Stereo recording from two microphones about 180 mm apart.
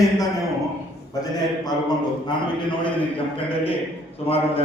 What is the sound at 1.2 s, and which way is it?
Speech, 20° left (ahead or behind).